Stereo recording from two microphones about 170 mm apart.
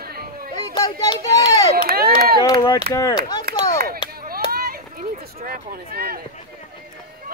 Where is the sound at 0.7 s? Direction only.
25° left (ahead or behind).